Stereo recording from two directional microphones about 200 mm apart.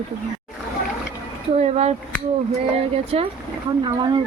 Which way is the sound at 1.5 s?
35° right (ahead or behind).